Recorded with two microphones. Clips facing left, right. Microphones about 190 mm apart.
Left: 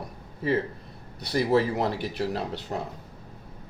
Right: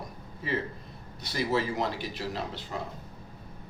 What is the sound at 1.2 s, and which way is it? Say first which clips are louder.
Speech: left 6 dB; 60° left (ahead or behind).